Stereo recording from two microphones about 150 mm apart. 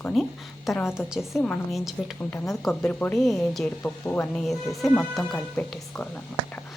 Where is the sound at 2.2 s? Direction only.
15° left (ahead or behind).